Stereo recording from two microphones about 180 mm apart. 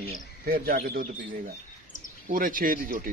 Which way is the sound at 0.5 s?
55° right (ahead or behind).